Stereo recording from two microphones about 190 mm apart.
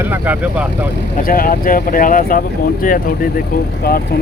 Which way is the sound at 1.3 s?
50° left (ahead or behind).